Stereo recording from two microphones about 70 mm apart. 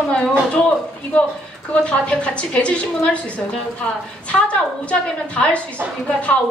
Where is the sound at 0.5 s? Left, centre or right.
Centre.